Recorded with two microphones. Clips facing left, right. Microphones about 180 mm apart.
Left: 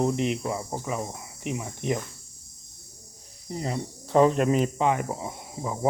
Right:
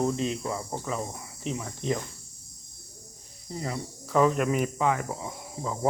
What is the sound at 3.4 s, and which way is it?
Speech, 20° left (ahead or behind).